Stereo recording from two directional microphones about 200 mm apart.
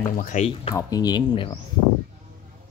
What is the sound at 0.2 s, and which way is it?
Speech, 35° left (ahead or behind).